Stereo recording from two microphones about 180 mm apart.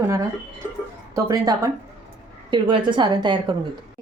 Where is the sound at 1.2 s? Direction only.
20° right (ahead or behind).